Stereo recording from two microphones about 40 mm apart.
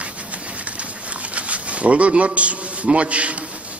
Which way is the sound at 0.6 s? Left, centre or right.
Right.